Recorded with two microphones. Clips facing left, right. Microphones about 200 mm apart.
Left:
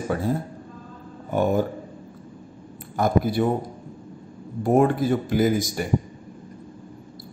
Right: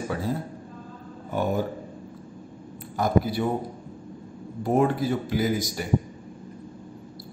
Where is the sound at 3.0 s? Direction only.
50° left (ahead or behind).